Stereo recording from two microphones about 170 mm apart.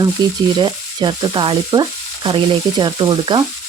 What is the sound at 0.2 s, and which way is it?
Frying, 25° right (ahead or behind).